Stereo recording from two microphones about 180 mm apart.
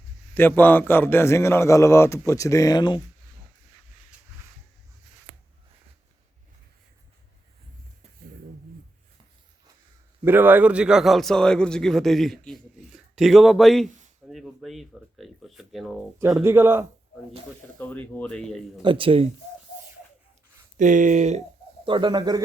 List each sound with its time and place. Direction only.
0.3 s a man's voice: 10° left (ahead or behind)
10.2 s a man's voice: 10° right (ahead or behind)
14.3 s a sound: centre (ahead or behind)
16.3 s a man's voice: 10° right (ahead or behind)
17.7 s a man's voice: 10° left (ahead or behind)
18.8 s speech: 30° right (ahead or behind)
20.7 s speech: 45° right (ahead or behind)
21.8 s speech: 25° right (ahead or behind)